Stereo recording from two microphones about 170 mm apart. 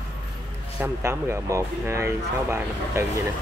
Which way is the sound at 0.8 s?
15° right (ahead or behind).